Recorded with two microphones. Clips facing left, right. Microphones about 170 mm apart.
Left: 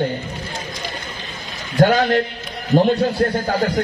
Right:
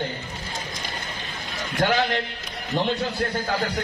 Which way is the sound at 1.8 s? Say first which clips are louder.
Left 8 dB; 45° left (ahead or behind).